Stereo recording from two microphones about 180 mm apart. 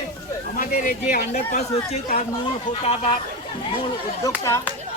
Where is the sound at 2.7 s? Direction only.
35° left (ahead or behind).